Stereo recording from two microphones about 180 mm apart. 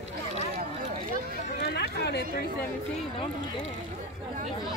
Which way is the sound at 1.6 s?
65° left (ahead or behind).